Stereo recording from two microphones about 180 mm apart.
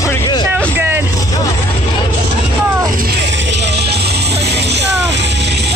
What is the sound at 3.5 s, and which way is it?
Music, 70° right (ahead or behind).